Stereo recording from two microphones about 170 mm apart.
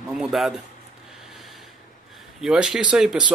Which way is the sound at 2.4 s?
5° right (ahead or behind).